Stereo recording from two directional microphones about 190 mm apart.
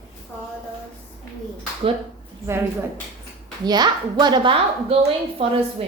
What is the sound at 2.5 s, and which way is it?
Speech, 15° right (ahead or behind).